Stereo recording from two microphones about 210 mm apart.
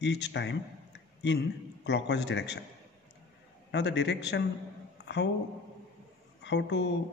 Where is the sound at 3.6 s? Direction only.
55° left (ahead or behind).